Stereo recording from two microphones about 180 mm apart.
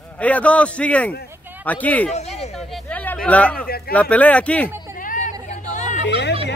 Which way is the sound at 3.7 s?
60° left (ahead or behind).